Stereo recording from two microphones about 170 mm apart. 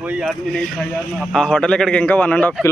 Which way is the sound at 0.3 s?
5° left (ahead or behind).